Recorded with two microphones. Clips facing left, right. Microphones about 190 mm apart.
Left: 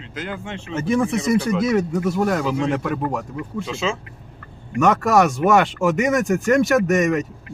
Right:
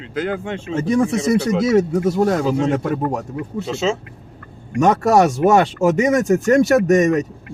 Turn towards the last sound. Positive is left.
turn(degrees=-30)  # may be behind; listen again after turning